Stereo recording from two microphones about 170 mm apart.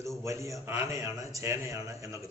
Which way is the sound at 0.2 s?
15° right (ahead or behind).